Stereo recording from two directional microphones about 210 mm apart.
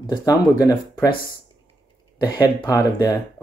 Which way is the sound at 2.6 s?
15° left (ahead or behind).